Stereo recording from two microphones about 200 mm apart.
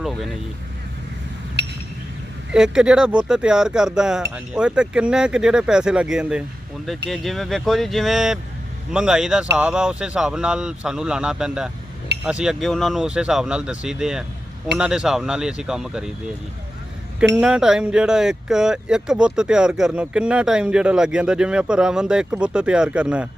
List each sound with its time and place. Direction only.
0.0 s vehicle: centre (ahead or behind)
1.6 s a sound: 60° right (ahead or behind)
2.5 s speech: 5° right (ahead or behind)
17.3 s speech: 5° right (ahead or behind)